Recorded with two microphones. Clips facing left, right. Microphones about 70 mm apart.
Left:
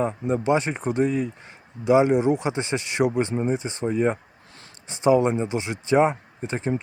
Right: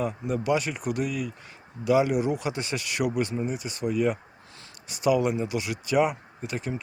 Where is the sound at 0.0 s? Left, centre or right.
Left.